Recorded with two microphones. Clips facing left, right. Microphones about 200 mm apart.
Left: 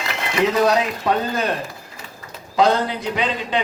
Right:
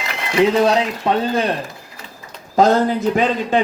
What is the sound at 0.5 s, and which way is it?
Speech, 25° right (ahead or behind).